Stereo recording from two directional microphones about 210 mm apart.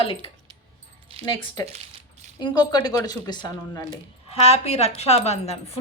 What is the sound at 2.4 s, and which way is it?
A woman's voice, 20° left (ahead or behind).